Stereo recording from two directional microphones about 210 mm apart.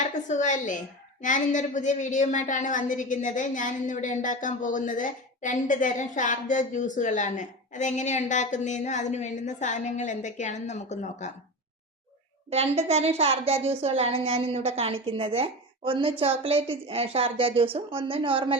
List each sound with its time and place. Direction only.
0.0 s a woman's voice: 35° left (ahead or behind)
12.5 s a woman's voice: 30° right (ahead or behind)